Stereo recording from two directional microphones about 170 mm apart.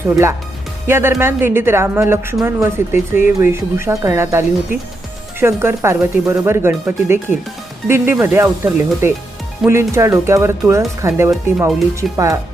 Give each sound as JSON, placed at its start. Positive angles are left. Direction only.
{"t": 0.9, "sound": "speech", "side_deg": -15}